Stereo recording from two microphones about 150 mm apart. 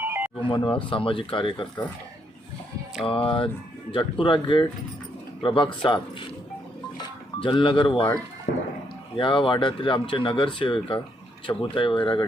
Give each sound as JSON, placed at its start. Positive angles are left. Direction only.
{"t": 0.0, "sound": "a sound", "side_deg": -15}
{"t": 0.4, "sound": "speech", "side_deg": 35}
{"t": 3.0, "sound": "speech", "side_deg": 35}
{"t": 7.3, "sound": "speech", "side_deg": 35}
{"t": 8.5, "sound": "a sound", "side_deg": 90}
{"t": 9.1, "sound": "speech", "side_deg": 35}